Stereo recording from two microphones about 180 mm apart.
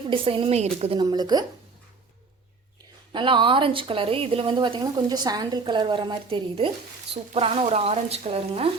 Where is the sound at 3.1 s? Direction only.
30° right (ahead or behind).